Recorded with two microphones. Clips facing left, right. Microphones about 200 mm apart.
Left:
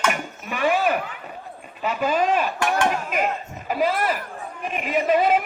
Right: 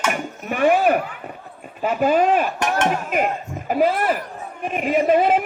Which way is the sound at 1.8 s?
50° right (ahead or behind).